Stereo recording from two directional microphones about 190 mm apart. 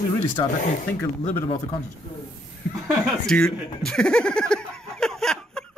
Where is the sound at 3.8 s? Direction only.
5° left (ahead or behind).